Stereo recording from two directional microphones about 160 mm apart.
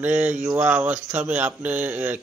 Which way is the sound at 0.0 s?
10° right (ahead or behind).